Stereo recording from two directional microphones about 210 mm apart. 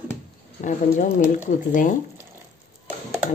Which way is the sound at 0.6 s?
35° left (ahead or behind).